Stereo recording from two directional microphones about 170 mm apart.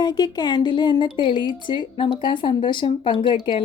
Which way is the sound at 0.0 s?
25° left (ahead or behind).